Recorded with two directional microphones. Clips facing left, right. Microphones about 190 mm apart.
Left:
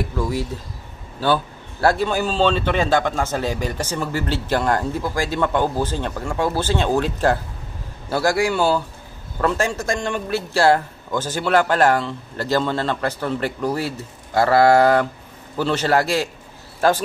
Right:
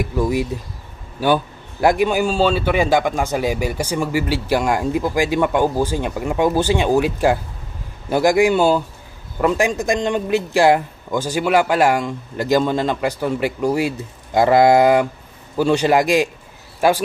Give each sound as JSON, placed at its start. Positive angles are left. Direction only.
{"t": 0.0, "sound": "a man's voice", "side_deg": -15}